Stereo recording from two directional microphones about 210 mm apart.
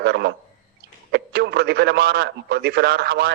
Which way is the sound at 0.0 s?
50° right (ahead or behind).